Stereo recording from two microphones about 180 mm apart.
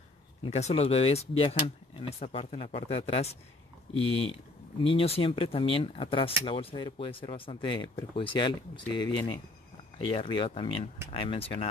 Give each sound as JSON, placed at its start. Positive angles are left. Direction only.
{"t": 0.4, "sound": "speech", "side_deg": 35}